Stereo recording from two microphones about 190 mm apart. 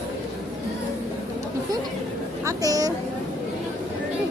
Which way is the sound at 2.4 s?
15° right (ahead or behind).